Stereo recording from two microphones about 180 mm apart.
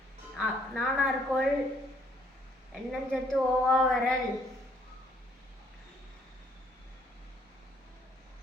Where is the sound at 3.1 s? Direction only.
Centre (ahead or behind).